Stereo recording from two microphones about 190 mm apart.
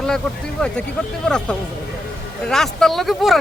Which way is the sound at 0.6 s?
5° left (ahead or behind).